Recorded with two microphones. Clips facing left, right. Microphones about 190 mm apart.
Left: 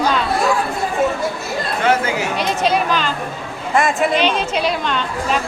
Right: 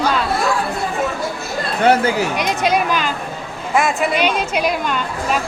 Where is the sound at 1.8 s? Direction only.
35° right (ahead or behind).